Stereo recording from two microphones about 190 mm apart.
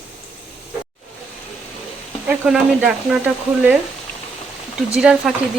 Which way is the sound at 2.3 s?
5° right (ahead or behind).